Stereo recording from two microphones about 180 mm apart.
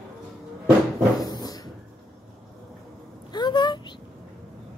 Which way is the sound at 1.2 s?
20° left (ahead or behind).